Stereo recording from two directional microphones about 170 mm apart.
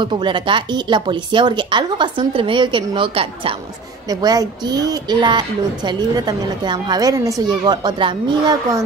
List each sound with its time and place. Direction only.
0.0 s speech: 30° right (ahead or behind)